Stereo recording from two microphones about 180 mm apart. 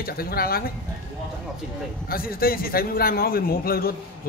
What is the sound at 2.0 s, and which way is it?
Speech, 55° left (ahead or behind).